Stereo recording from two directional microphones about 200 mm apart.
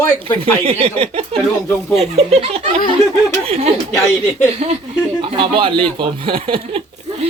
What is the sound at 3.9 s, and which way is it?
Speech, 15° left (ahead or behind).